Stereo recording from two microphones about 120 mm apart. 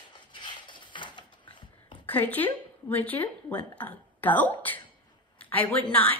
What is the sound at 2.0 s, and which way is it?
A woman's voice, 15° left (ahead or behind).